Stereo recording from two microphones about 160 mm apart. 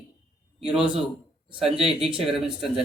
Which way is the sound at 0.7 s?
5° right (ahead or behind).